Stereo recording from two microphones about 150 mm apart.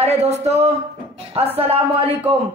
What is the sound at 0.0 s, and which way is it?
Speech, 45° right (ahead or behind).